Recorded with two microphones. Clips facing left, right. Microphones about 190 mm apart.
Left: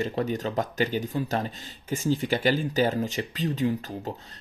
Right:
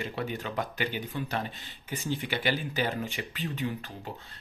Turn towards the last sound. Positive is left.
turn(degrees=40)  # may be behind; listen again after turning